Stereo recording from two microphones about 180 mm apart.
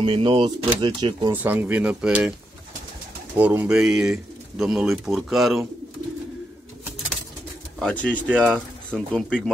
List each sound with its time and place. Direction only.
0.0 s speech: 30° right (ahead or behind)
1.3 s speech: 10° right (ahead or behind)
3.3 s speech: 10° right (ahead or behind)
7.8 s speech: 5° left (ahead or behind)